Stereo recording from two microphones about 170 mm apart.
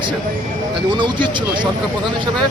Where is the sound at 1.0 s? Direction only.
25° right (ahead or behind).